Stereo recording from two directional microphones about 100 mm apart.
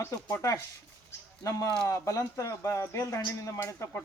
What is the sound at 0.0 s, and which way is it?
Speech, 25° left (ahead or behind).